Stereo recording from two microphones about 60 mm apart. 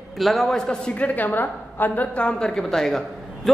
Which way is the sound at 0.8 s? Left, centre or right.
Left.